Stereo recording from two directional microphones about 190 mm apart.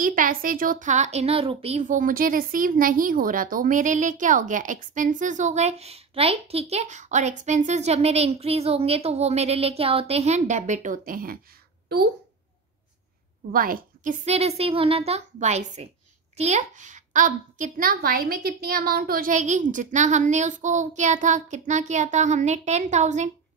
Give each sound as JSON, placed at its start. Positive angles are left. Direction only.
{"t": 0.0, "sound": "a woman's voice", "side_deg": -45}
{"t": 13.5, "sound": "a woman's voice", "side_deg": -50}
{"t": 14.2, "sound": "a child's voice", "side_deg": -35}